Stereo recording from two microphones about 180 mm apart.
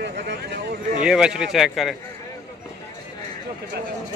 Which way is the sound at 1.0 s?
5° right (ahead or behind).